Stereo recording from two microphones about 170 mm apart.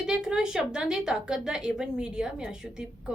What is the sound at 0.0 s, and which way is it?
A woman's voice, 5° right (ahead or behind).